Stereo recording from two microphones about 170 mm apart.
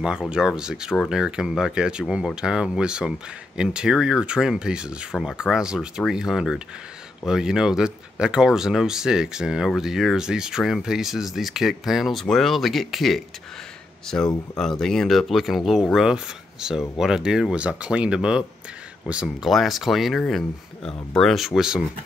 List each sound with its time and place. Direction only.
0.0 s speech: 5° right (ahead or behind)